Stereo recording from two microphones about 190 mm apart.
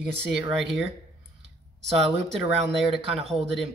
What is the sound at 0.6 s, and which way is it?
Speech, centre (ahead or behind).